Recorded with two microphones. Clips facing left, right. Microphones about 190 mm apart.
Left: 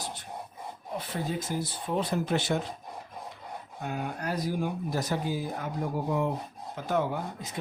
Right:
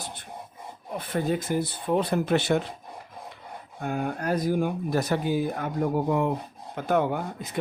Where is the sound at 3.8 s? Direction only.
50° right (ahead or behind).